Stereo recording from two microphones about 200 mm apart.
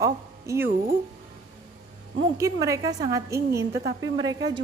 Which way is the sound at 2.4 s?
15° right (ahead or behind).